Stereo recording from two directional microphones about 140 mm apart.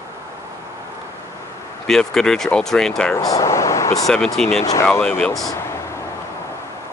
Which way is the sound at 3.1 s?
25° left (ahead or behind).